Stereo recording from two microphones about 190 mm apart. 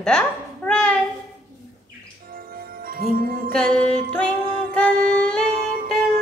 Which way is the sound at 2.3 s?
50° right (ahead or behind).